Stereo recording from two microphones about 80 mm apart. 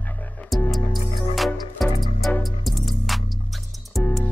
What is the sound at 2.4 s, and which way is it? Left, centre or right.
Music, centre.